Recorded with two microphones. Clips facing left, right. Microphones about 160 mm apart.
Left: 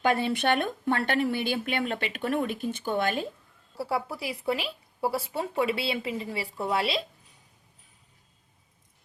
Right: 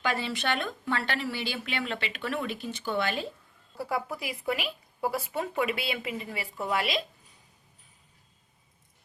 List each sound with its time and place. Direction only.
0.0 s speech: 55° left (ahead or behind)
3.8 s speech: 30° left (ahead or behind)